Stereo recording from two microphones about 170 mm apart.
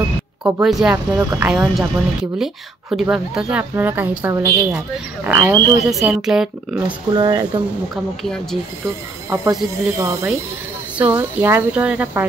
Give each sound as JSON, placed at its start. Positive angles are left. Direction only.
{"t": 0.4, "sound": "speech", "side_deg": -5}
{"t": 1.1, "sound": "a woman's voice", "side_deg": -15}
{"t": 1.5, "sound": "a woman's voice", "side_deg": -5}
{"t": 7.1, "sound": "speech", "side_deg": -25}
{"t": 8.2, "sound": "speech", "side_deg": 5}
{"t": 9.3, "sound": "a woman's voice", "side_deg": -20}